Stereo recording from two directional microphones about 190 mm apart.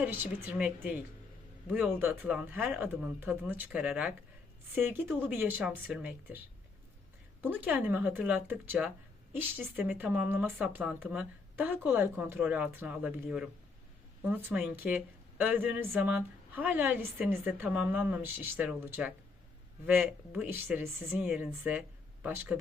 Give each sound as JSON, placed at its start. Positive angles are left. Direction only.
{"t": 0.0, "sound": "a woman's voice", "side_deg": -10}
{"t": 7.4, "sound": "a woman's voice", "side_deg": -10}